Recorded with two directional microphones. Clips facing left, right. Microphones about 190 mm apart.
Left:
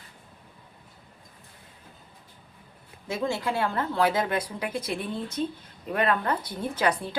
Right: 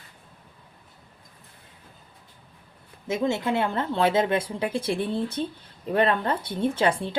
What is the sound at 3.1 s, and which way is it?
A woman's voice, 20° right (ahead or behind).